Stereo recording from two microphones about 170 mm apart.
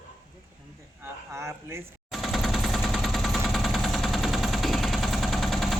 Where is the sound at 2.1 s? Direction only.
Centre (ahead or behind).